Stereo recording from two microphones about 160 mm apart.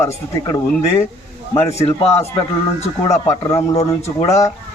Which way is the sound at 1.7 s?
40° left (ahead or behind).